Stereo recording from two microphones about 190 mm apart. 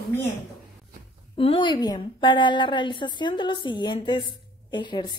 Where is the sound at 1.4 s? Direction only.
25° left (ahead or behind).